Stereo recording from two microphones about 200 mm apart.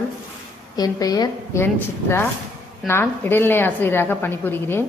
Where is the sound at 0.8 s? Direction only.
20° left (ahead or behind).